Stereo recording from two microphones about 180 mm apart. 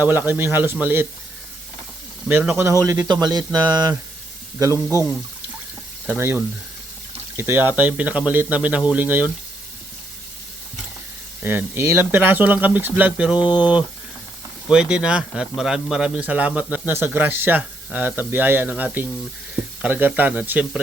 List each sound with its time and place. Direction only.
0.0 s speech: 10° right (ahead or behind)
2.2 s speech: 10° right (ahead or behind)
6.1 s speech: 10° right (ahead or behind)
11.4 s speech: 10° right (ahead or behind)
14.7 s speech: 5° right (ahead or behind)